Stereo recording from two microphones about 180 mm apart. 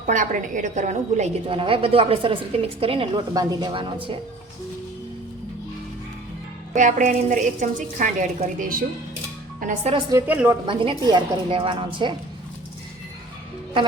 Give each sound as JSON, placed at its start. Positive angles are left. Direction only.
{"t": 0.0, "sound": "a woman's voice", "side_deg": -45}
{"t": 6.7, "sound": "a woman's voice", "side_deg": -45}
{"t": 10.1, "sound": "a woman's voice", "side_deg": -15}
{"t": 10.7, "sound": "a woman's voice", "side_deg": -25}